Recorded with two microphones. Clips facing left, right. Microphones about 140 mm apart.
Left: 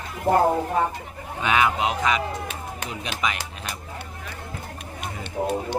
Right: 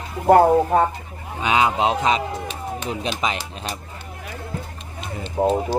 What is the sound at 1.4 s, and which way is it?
Speech, 25° right (ahead or behind).